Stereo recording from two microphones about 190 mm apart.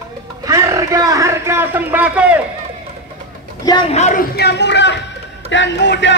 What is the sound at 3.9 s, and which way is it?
Speech, 40° left (ahead or behind).